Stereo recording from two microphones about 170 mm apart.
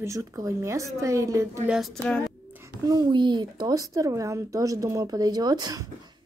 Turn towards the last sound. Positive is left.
turn(degrees=-25)  # may be behind; listen again after turning